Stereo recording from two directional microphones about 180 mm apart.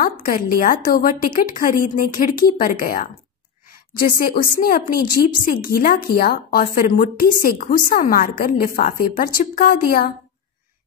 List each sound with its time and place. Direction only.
0.0 s a woman's voice: 50° left (ahead or behind)